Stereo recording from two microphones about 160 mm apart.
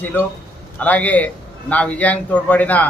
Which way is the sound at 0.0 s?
10° left (ahead or behind).